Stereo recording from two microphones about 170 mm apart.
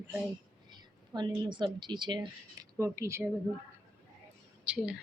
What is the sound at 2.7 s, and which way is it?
Speech, 15° right (ahead or behind).